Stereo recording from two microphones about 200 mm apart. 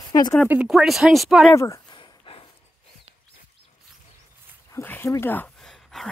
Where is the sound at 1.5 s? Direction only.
15° left (ahead or behind).